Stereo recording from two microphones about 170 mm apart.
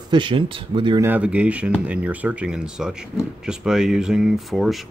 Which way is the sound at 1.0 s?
10° right (ahead or behind).